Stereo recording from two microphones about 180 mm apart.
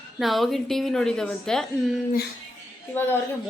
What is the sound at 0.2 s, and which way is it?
A woman's voice, centre (ahead or behind).